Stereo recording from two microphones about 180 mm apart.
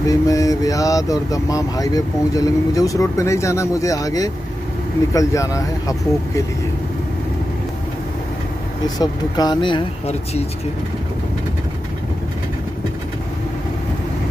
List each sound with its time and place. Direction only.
0.1 s speech: 20° left (ahead or behind)
8.8 s speech: 20° left (ahead or behind)